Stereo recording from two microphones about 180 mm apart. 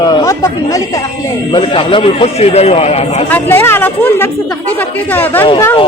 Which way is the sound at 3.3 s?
10° left (ahead or behind).